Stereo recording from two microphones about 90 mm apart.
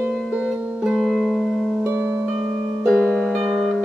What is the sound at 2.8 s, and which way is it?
Music, centre (ahead or behind).